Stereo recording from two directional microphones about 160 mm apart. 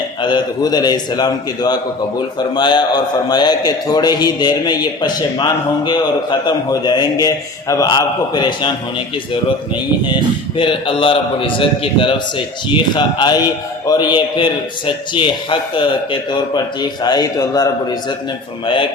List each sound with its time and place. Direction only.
0.2 s a man's voice: 25° left (ahead or behind)
10.6 s a man's voice: 30° left (ahead or behind)